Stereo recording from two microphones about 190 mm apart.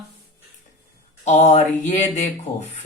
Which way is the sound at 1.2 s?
35° left (ahead or behind).